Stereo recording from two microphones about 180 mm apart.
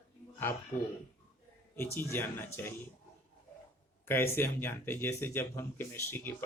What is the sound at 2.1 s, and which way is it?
Speech, 15° left (ahead or behind).